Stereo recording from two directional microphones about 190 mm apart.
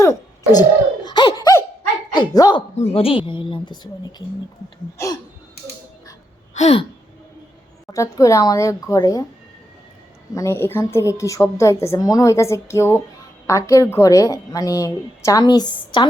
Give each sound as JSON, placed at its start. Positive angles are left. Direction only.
{"t": 0.0, "sound": "cough", "side_deg": 15}
{"t": 1.0, "sound": "laughter", "side_deg": 20}
{"t": 2.1, "sound": "speech", "side_deg": 20}
{"t": 2.7, "sound": "a woman's voice", "side_deg": 35}
{"t": 6.5, "sound": "a sound", "side_deg": 35}
{"t": 7.9, "sound": "a woman's voice", "side_deg": 15}
{"t": 10.3, "sound": "a woman's voice", "side_deg": 15}